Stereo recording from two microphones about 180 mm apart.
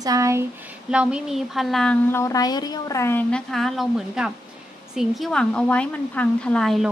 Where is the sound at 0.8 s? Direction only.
5° right (ahead or behind).